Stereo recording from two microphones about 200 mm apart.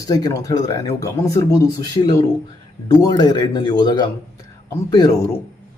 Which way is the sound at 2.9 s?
20° left (ahead or behind).